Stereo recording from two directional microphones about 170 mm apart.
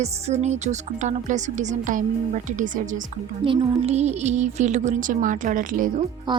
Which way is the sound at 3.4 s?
35° right (ahead or behind).